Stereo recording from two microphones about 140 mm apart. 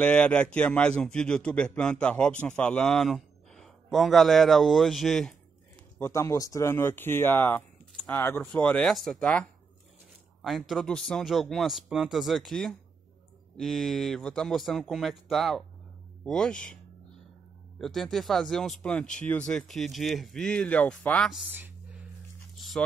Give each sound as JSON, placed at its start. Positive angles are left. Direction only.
{"t": 0.0, "sound": "a man's voice", "side_deg": 10}
{"t": 5.9, "sound": "a man's voice", "side_deg": 20}
{"t": 17.7, "sound": "speech", "side_deg": 0}
{"t": 21.5, "sound": "a sound", "side_deg": -15}